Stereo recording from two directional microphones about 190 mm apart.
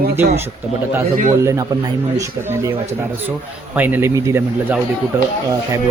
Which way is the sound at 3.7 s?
10° right (ahead or behind).